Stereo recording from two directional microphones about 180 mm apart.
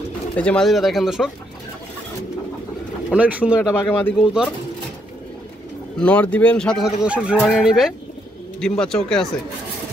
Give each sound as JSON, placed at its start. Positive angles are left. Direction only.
{"t": 0.4, "sound": "speech", "side_deg": 5}
{"t": 3.1, "sound": "speech", "side_deg": -5}
{"t": 3.6, "sound": "speech", "side_deg": 10}
{"t": 4.2, "sound": "speech", "side_deg": -5}
{"t": 5.9, "sound": "speech", "side_deg": 5}